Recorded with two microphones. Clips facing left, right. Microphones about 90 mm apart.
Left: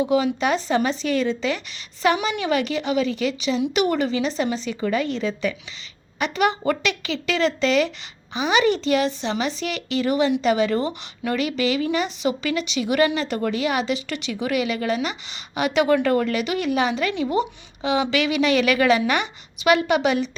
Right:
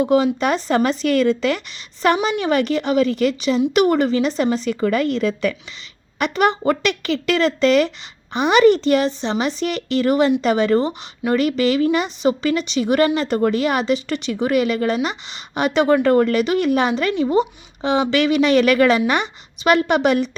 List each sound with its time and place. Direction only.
0.3 s a woman's voice: 50° right (ahead or behind)
10.8 s speech: 30° right (ahead or behind)
11.3 s speech: 45° right (ahead or behind)